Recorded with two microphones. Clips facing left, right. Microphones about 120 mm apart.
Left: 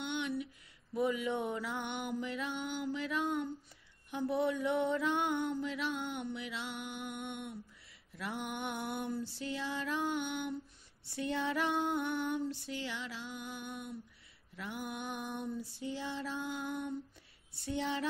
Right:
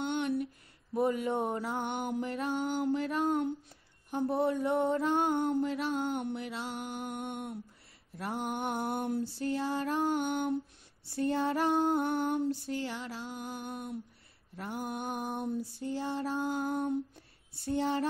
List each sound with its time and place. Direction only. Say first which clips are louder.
0.0 s a sound: right 5 dB; 40° right (ahead or behind)
0.9 s music: right 4 dB; 45° right (ahead or behind)
4.3 s mantra: right 3 dB; 40° right (ahead or behind)
5.5 s music: right 6 dB; 45° right (ahead or behind)
6.3 s mantra: right 4 dB; 45° right (ahead or behind)
9.2 s music: right 7 dB; 45° right (ahead or behind)
11.1 s mantra: right 5 dB; 40° right (ahead or behind)
12.4 s music: right 6 dB; 45° right (ahead or behind)